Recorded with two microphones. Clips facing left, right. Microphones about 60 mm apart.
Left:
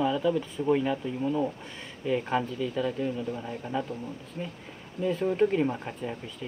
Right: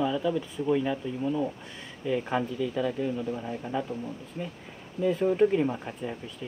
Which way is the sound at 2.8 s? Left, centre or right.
Centre.